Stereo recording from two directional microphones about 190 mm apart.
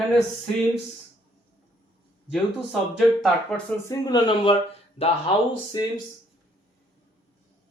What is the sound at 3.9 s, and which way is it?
Speech, 20° left (ahead or behind).